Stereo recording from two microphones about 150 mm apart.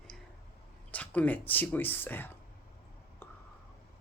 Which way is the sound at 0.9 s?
10° left (ahead or behind).